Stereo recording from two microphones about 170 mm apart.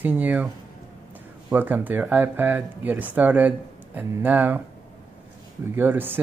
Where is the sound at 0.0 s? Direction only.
10° right (ahead or behind).